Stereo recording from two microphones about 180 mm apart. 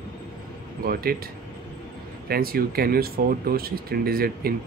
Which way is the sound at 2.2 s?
55° right (ahead or behind).